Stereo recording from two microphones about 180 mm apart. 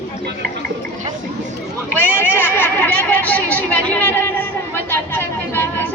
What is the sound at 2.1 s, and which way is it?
Chatter, 10° left (ahead or behind).